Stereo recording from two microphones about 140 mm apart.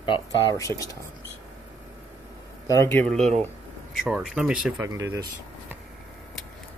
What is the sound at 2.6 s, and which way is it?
Speech, 20° left (ahead or behind).